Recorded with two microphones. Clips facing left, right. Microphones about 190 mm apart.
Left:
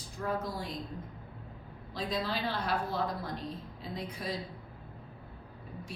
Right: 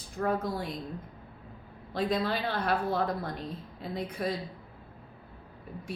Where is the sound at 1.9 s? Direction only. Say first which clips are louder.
Right 5 dB; 55° right (ahead or behind).